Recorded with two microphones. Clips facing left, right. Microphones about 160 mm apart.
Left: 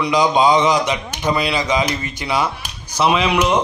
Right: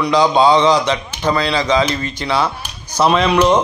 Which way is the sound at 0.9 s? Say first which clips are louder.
Right 2 dB; 10° left (ahead or behind).